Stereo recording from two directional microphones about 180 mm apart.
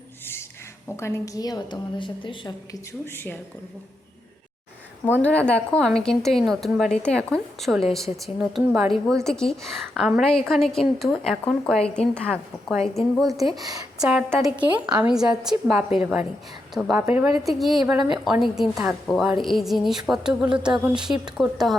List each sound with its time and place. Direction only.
0.9 s a woman's voice: 15° left (ahead or behind)
5.2 s a woman's voice: 10° left (ahead or behind)
14.4 s speech: 25° right (ahead or behind)
15.0 s a woman's voice: 5° right (ahead or behind)
17.6 s a woman's voice: centre (ahead or behind)